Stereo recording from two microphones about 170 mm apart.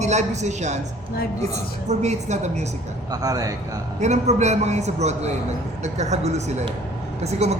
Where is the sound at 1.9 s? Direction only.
40° right (ahead or behind).